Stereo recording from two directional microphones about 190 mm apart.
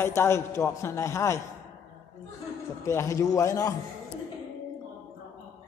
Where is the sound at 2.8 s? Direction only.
15° left (ahead or behind).